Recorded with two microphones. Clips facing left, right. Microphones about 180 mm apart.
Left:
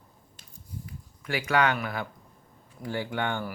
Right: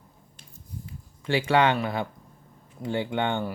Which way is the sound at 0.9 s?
25° right (ahead or behind).